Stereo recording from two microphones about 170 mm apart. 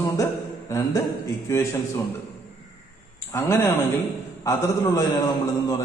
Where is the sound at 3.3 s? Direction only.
15° left (ahead or behind).